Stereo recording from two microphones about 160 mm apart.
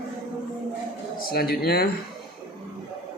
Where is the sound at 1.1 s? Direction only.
65° left (ahead or behind).